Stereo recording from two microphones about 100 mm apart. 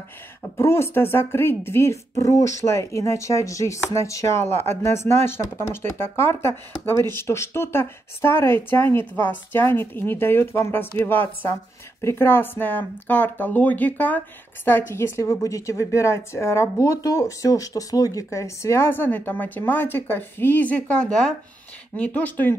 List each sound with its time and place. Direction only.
0.4 s speech: 25° left (ahead or behind)